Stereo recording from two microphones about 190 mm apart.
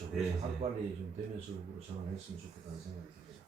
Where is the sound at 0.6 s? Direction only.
35° right (ahead or behind).